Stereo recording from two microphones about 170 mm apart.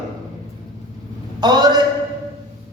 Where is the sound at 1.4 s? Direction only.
25° right (ahead or behind).